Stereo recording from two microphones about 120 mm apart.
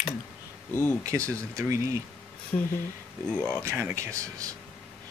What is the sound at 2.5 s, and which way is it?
Speech, 75° left (ahead or behind).